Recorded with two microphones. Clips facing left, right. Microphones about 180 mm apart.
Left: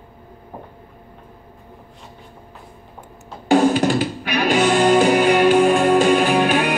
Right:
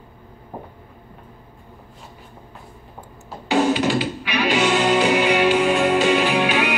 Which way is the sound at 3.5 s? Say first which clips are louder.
Left 3 dB; 45° left (ahead or behind).